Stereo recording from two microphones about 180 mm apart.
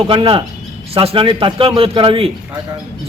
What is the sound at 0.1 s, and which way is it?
A man's voice, 30° right (ahead or behind).